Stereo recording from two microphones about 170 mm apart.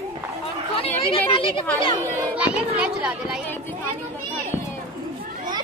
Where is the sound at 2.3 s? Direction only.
5° right (ahead or behind).